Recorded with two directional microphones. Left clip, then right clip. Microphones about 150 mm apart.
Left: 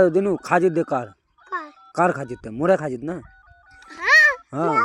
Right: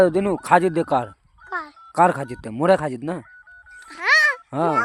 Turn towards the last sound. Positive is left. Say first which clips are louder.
# left 1 dB
turn(degrees=-25)  # may be behind; listen again after turning